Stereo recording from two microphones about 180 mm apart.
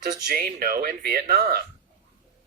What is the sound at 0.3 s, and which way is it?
Speech, 55° right (ahead or behind).